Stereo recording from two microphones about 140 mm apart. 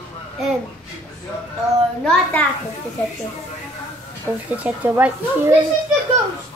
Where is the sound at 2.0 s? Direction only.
10° left (ahead or behind).